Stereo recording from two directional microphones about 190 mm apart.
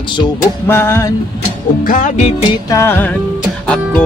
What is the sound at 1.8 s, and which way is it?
Music, 45° left (ahead or behind).